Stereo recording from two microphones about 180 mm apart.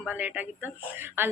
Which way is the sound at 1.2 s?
10° right (ahead or behind).